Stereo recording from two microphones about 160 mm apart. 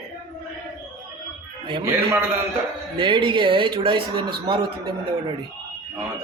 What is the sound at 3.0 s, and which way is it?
Speech, 30° right (ahead or behind).